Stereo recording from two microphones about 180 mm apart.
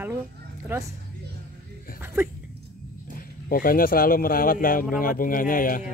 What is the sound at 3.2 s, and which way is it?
Speech, 50° left (ahead or behind).